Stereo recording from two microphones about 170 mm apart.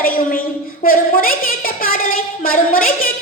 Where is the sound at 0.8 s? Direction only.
55° left (ahead or behind).